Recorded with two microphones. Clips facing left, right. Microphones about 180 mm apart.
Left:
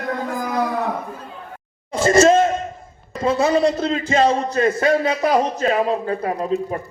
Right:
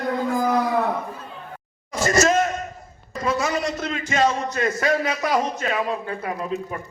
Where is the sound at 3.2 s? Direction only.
30° left (ahead or behind).